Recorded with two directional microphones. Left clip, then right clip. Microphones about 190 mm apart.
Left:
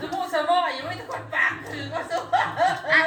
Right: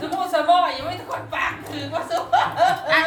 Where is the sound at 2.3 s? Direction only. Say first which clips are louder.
Right 4 dB; centre (ahead or behind).